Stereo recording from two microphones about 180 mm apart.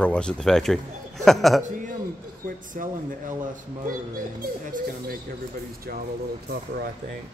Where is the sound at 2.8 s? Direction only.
50° right (ahead or behind).